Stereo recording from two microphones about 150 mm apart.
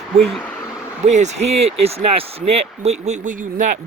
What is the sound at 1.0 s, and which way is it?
Speech, 50° right (ahead or behind).